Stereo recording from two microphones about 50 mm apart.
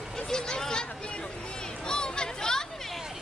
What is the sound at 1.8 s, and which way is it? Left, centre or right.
Chatter, centre.